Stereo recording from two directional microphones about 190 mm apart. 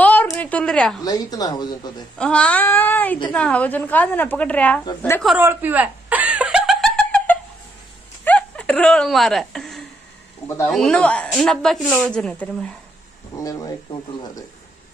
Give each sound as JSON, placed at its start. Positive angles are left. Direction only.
{"t": 0.0, "sound": "a sound", "side_deg": 10}
{"t": 1.0, "sound": "speech", "side_deg": 20}
{"t": 2.1, "sound": "a woman's voice", "side_deg": 5}
{"t": 5.2, "sound": "a sound", "side_deg": -5}
{"t": 10.6, "sound": "speech", "side_deg": 5}
{"t": 13.4, "sound": "speech", "side_deg": 20}